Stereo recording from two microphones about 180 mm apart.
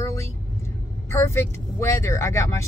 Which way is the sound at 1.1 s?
15° left (ahead or behind).